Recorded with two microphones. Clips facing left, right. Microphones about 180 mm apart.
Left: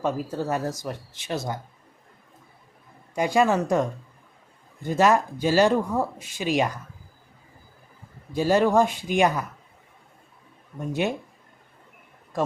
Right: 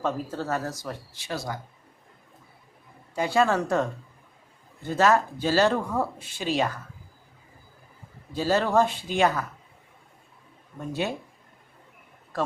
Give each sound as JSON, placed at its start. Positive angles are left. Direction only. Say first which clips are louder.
{"t": 0.0, "sound": "speech", "louder": "left 2 dB", "side_deg": 15}
{"t": 3.2, "sound": "speech", "louder": "left 2 dB", "side_deg": 15}
{"t": 8.3, "sound": "speech", "louder": "left 4 dB", "side_deg": 15}